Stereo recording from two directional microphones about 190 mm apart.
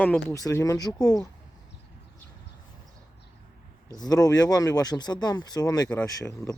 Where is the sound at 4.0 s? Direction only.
20° left (ahead or behind).